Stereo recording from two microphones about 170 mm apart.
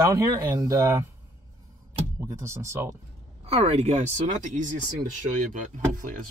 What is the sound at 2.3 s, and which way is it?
Speech, 15° right (ahead or behind).